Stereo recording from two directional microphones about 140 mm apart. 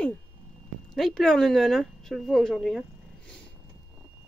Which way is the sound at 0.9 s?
Centre (ahead or behind).